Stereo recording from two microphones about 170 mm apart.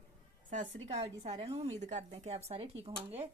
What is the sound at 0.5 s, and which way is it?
Speech, 40° right (ahead or behind).